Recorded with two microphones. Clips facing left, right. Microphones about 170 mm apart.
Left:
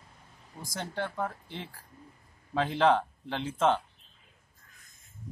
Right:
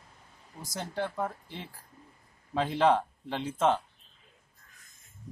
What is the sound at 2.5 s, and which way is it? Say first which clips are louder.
Speech: even; 5° right (ahead or behind).